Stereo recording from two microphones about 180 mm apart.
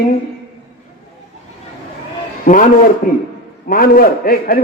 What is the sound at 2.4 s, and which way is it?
Speech, 45° left (ahead or behind).